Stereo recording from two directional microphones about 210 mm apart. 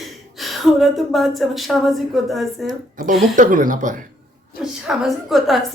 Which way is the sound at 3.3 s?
40° right (ahead or behind).